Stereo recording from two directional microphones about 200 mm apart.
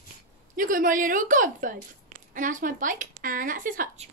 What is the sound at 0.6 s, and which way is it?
Speech, 40° right (ahead or behind).